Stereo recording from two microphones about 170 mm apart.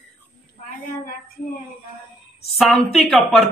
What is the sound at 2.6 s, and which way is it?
Speech, centre (ahead or behind).